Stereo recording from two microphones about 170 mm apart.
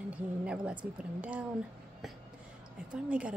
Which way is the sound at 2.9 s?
5° right (ahead or behind).